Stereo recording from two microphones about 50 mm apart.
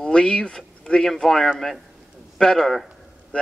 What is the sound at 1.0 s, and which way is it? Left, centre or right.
Speech, centre.